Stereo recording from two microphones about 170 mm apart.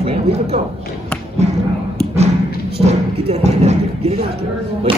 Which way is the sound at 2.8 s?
40° right (ahead or behind).